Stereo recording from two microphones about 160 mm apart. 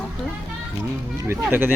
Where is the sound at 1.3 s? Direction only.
15° right (ahead or behind).